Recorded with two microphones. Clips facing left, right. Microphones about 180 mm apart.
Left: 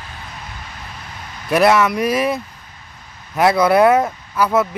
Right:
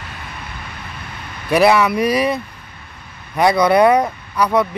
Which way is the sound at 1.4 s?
Centre (ahead or behind).